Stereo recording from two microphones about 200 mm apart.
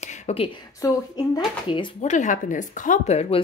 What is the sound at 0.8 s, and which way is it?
Speech, 20° left (ahead or behind).